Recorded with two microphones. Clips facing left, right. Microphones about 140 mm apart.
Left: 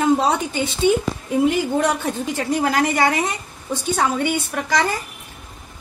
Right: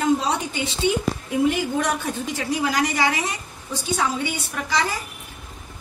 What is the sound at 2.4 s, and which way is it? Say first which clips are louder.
A woman's voice: left 4 dB; 50° left (ahead or behind).